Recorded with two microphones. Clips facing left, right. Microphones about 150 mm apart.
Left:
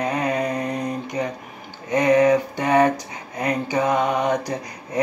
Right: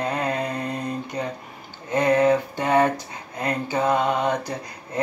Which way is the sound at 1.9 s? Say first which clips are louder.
Left 2 dB; 15° left (ahead or behind).